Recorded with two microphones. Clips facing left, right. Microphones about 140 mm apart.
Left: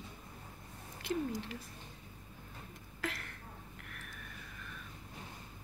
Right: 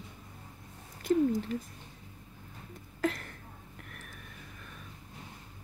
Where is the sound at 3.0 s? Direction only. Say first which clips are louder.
Right 9 dB; 45° right (ahead or behind).